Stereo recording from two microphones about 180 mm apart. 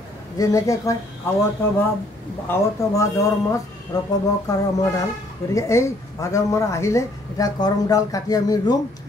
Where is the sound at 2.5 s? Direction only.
15° left (ahead or behind).